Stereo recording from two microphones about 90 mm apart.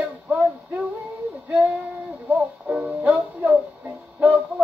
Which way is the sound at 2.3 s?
15° right (ahead or behind).